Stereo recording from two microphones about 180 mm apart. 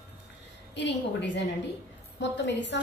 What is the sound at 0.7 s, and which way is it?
A woman's voice, 75° left (ahead or behind).